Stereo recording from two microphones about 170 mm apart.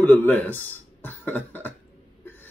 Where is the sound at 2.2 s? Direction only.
10° left (ahead or behind).